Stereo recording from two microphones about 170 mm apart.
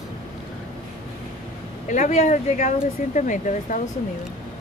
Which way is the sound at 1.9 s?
45° left (ahead or behind).